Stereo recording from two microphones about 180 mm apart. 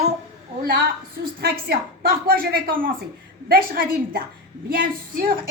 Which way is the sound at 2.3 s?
55° right (ahead or behind).